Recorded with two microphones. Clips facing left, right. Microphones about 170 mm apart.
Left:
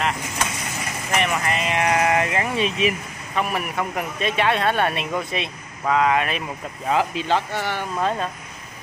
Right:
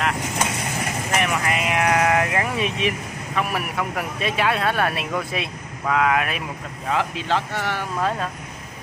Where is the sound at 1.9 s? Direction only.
5° left (ahead or behind).